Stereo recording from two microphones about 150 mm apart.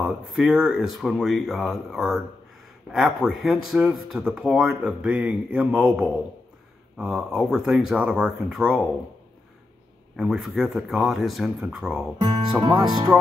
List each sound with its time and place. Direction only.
0.0 s speech: 5° right (ahead or behind)
10.1 s speech: 5° right (ahead or behind)
12.2 s speech: 30° right (ahead or behind)